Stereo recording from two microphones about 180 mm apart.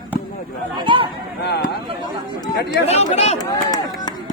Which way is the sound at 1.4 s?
65° left (ahead or behind).